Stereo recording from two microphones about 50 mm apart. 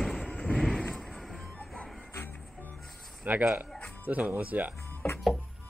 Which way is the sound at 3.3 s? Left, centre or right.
Right.